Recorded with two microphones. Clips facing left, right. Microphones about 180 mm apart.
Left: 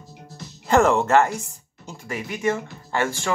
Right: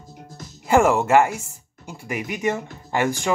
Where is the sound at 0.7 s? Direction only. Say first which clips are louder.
Right 1 dB; 10° right (ahead or behind).